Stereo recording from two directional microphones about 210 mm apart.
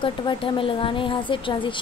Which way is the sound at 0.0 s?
25° left (ahead or behind).